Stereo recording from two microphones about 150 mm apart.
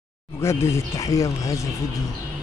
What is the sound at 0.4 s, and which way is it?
Speech, 20° left (ahead or behind).